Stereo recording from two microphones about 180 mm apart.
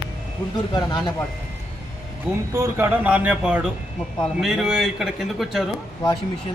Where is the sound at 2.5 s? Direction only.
15° right (ahead or behind).